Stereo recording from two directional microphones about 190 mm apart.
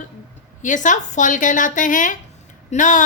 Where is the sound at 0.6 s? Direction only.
40° left (ahead or behind).